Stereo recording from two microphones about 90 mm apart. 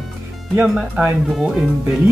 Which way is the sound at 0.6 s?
5° right (ahead or behind).